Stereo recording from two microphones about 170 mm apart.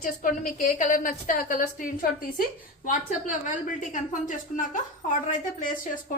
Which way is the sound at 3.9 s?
50° left (ahead or behind).